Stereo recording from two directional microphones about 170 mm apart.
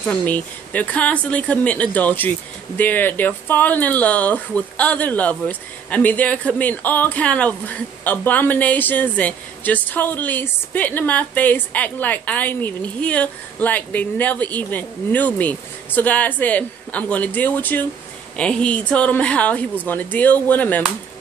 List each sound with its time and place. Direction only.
0.0 s speech: 10° left (ahead or behind)